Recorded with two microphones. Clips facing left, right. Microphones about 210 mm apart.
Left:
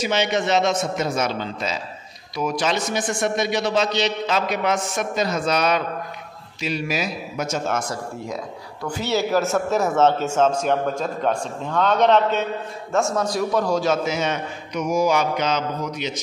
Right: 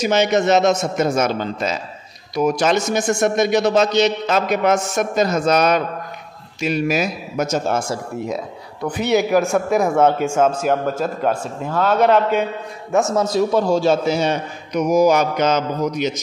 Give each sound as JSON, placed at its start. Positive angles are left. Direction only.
{"t": 0.0, "sound": "a man's voice", "side_deg": -45}
{"t": 13.3, "sound": "a man's voice", "side_deg": -25}